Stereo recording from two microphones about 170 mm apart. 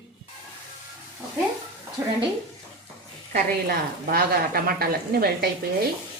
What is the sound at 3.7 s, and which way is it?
Speech, 65° right (ahead or behind).